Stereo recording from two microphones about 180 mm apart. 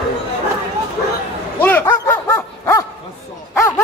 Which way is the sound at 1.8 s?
20° left (ahead or behind).